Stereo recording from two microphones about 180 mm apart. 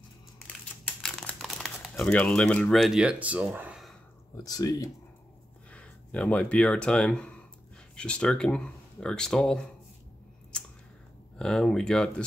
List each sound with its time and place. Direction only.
1.0 s crumpling: centre (ahead or behind)
4.4 s speech: 20° left (ahead or behind)
5.7 s speech: 5° left (ahead or behind)
11.3 s speech: 5° left (ahead or behind)